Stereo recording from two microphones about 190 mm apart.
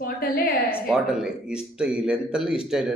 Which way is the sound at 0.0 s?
50° left (ahead or behind).